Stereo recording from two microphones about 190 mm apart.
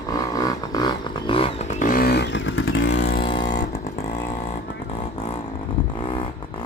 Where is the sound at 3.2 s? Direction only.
25° left (ahead or behind).